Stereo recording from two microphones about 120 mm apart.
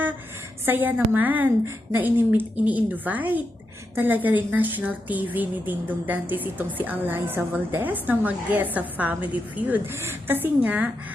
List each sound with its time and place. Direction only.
0.6 s a woman's voice: 15° right (ahead or behind)